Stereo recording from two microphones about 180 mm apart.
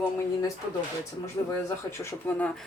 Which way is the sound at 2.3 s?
10° left (ahead or behind).